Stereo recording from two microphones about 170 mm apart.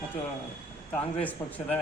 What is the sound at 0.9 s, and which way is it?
Speech, 10° left (ahead or behind).